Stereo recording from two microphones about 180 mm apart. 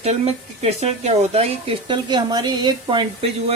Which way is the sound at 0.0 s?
35° right (ahead or behind).